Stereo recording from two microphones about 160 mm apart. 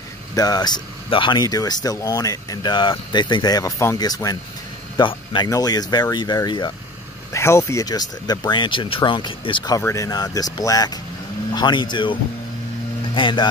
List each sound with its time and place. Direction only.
0.4 s speech: 25° left (ahead or behind)
9.8 s speech: 20° left (ahead or behind)